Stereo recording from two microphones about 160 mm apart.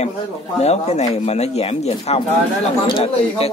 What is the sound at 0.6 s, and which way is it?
A man's voice, 45° left (ahead or behind).